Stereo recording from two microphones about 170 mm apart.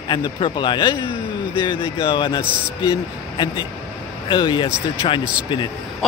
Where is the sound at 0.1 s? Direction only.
25° left (ahead or behind).